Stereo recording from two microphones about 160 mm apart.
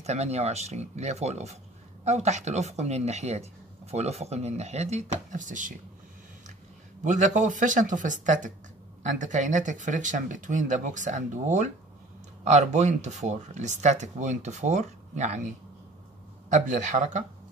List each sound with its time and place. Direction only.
0.0 s speech: 45° right (ahead or behind)
7.0 s speech: 50° right (ahead or behind)
16.5 s speech: 50° right (ahead or behind)